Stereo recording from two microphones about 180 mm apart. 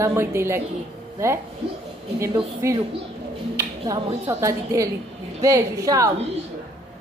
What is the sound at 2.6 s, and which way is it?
A woman's voice, 15° right (ahead or behind).